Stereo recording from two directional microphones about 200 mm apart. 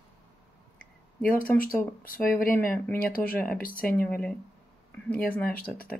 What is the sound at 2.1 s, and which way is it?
Speech, 45° left (ahead or behind).